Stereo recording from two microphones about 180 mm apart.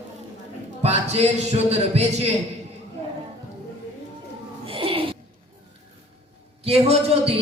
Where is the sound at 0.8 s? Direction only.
35° right (ahead or behind).